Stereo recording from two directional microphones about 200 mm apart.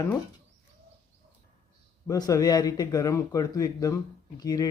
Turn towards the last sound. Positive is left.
turn(degrees=20)  # may be behind; listen again after turning